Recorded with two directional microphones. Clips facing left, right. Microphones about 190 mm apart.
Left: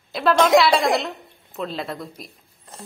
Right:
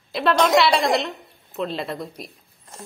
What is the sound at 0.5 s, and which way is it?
A woman's voice, centre (ahead or behind).